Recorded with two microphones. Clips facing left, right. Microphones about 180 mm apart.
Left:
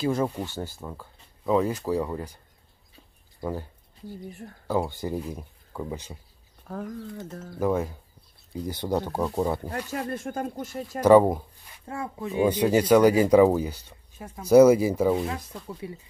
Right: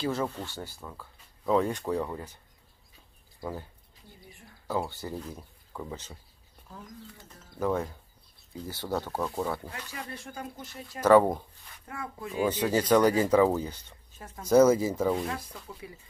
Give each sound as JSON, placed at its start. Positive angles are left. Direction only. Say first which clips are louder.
{"t": 0.3, "sound": "speech", "louder": "left 6 dB", "side_deg": 15}
{"t": 1.4, "sound": "speech", "louder": "left 2 dB", "side_deg": 5}
{"t": 4.3, "sound": "speech", "louder": "left 12 dB", "side_deg": 45}
{"t": 4.6, "sound": "speech", "louder": "left 5 dB", "side_deg": 15}
{"t": 6.7, "sound": "speech", "louder": "left 12 dB", "side_deg": 65}
{"t": 7.5, "sound": "speech", "louder": "left 4 dB", "side_deg": 10}
{"t": 9.6, "sound": "speech", "louder": "left 10 dB", "side_deg": 45}
{"t": 11.0, "sound": "speech", "louder": "left 4 dB", "side_deg": 10}
{"t": 11.8, "sound": "speech", "louder": "left 6 dB", "side_deg": 25}